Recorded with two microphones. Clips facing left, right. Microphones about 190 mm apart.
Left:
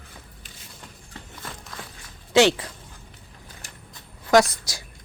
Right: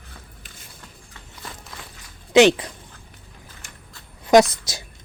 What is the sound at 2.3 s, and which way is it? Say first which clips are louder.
Speech: right 4 dB; 15° right (ahead or behind).